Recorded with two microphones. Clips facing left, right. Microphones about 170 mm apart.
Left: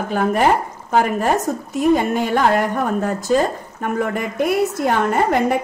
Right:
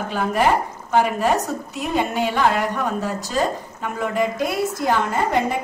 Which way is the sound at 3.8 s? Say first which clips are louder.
Left 1 dB; 55° left (ahead or behind).